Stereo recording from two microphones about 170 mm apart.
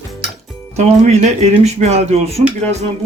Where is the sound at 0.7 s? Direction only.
40° right (ahead or behind).